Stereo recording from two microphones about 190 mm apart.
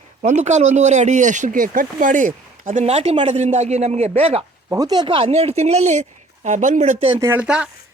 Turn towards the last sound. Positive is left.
turn(degrees=-5)  # may be behind; listen again after turning